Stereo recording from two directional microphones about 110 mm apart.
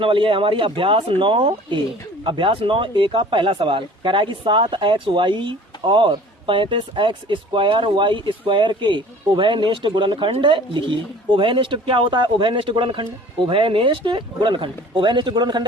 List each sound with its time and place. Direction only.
0.0 s speech: 50° right (ahead or behind)